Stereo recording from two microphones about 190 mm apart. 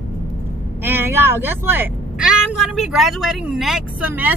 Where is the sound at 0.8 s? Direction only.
10° right (ahead or behind).